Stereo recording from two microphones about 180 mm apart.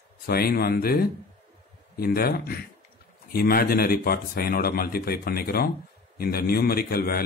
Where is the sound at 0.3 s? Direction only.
55° left (ahead or behind).